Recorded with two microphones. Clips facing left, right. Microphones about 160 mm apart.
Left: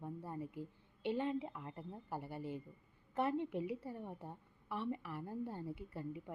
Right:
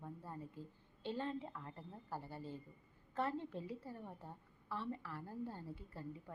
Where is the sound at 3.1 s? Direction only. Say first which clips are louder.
Left 4 dB; 20° left (ahead or behind).